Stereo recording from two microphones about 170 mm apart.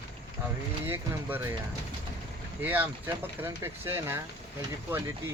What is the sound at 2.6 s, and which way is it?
Speech, 10° right (ahead or behind).